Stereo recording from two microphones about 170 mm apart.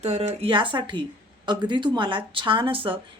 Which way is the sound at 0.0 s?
40° right (ahead or behind).